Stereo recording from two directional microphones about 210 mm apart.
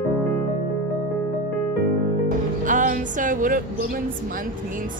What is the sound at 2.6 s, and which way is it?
Music, 40° right (ahead or behind).